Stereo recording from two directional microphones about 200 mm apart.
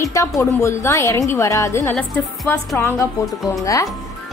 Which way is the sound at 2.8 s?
15° left (ahead or behind).